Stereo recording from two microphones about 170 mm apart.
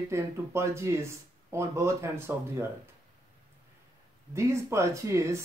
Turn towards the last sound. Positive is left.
turn(degrees=-15)  # may be behind; listen again after turning